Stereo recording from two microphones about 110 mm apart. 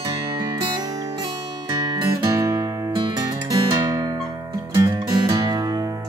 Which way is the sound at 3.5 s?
40° right (ahead or behind).